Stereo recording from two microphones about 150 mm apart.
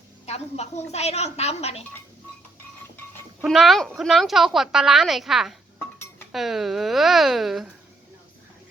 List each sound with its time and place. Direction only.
0.3 s a woman's voice: 45° left (ahead or behind)
3.4 s a woman's voice: centre (ahead or behind)